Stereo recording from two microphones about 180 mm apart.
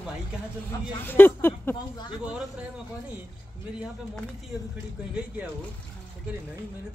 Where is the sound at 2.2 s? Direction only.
5° right (ahead or behind).